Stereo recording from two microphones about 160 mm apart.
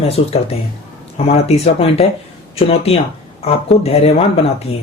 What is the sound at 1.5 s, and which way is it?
Speech, 40° left (ahead or behind).